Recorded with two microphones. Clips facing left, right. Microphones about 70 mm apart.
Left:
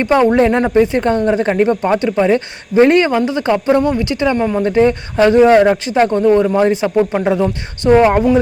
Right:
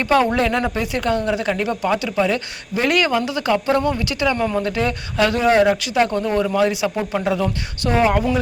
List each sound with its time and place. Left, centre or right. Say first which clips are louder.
0.0 s speech: left 6 dB; left